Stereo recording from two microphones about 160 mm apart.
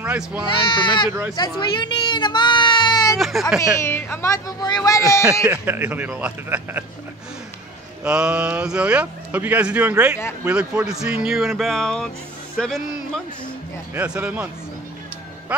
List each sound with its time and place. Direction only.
0.0 s speech: 10° right (ahead or behind)
0.5 s speech: 30° left (ahead or behind)
3.2 s speech: centre (ahead or behind)
3.8 s speech: 15° left (ahead or behind)
5.4 s speech: 10° right (ahead or behind)
8.0 s speech: 5° right (ahead or behind)
13.9 s speech: 10° right (ahead or behind)